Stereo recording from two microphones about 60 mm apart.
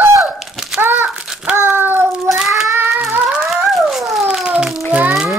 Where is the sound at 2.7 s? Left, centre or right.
Right.